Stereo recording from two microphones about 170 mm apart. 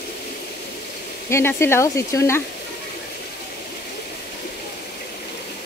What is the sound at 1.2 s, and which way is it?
Speech, 15° left (ahead or behind).